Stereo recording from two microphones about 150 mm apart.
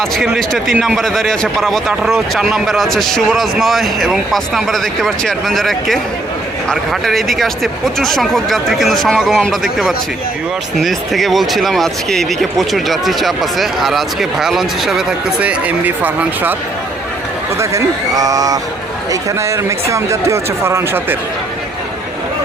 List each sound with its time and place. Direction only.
0.0 s a man's voice: centre (ahead or behind)
17.6 s speech: 20° right (ahead or behind)